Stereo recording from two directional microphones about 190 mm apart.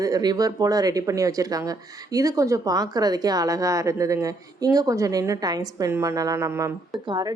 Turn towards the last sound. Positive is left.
turn(degrees=-25)  # may be behind; listen again after turning